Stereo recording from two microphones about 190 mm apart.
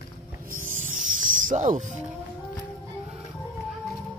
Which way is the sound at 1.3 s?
45° right (ahead or behind).